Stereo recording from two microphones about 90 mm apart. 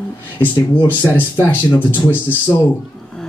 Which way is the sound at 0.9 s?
20° left (ahead or behind).